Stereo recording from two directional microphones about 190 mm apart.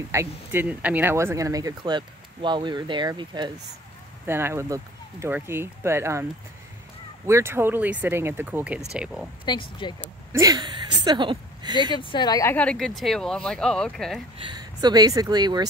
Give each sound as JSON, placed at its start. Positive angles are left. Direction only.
{"t": 0.1, "sound": "speech", "side_deg": -15}
{"t": 7.2, "sound": "speech", "side_deg": -15}
{"t": 9.5, "sound": "speech", "side_deg": 25}
{"t": 9.9, "sound": "speech", "side_deg": -15}
{"t": 11.9, "sound": "speech", "side_deg": 25}
{"t": 14.4, "sound": "speech", "side_deg": -20}